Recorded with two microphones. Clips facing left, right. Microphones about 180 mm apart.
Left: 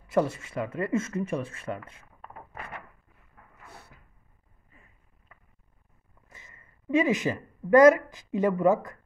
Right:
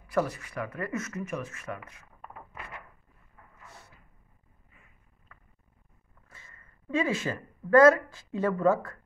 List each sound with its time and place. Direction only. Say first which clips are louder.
0.1 s speech: left 3 dB; 25° left (ahead or behind)
6.2 s a woman's voice: left 2 dB; 20° left (ahead or behind)